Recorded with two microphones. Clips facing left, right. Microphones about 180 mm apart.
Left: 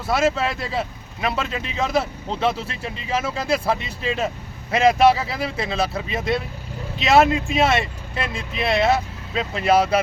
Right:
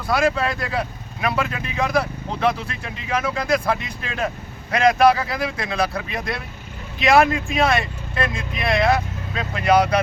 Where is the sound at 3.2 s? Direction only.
25° left (ahead or behind).